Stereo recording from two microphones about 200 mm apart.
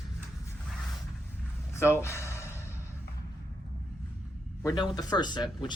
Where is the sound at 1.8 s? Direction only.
15° left (ahead or behind).